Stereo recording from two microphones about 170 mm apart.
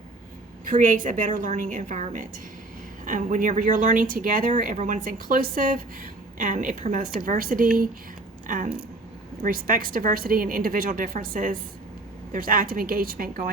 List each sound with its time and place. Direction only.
0.6 s a woman's voice: 50° right (ahead or behind)